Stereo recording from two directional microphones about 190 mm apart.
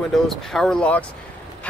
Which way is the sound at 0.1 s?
Centre (ahead or behind).